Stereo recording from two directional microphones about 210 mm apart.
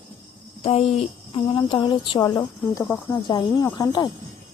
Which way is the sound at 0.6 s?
30° left (ahead or behind).